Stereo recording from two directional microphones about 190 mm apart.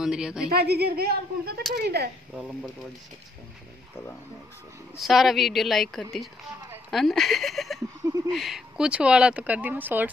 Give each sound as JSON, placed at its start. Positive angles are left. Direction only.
{"t": 0.0, "sound": "speech", "side_deg": -5}
{"t": 0.5, "sound": "a woman's voice", "side_deg": -55}
{"t": 4.9, "sound": "speech", "side_deg": 0}
{"t": 8.0, "sound": "a sound", "side_deg": -20}
{"t": 8.3, "sound": "speech", "side_deg": 0}